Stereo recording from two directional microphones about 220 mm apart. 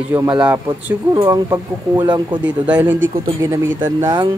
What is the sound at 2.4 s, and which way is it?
Speech, 5° right (ahead or behind).